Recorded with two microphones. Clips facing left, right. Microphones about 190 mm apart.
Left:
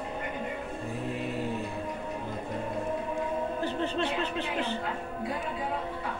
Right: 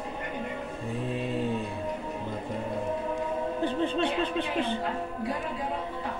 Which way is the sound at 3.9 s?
55° right (ahead or behind).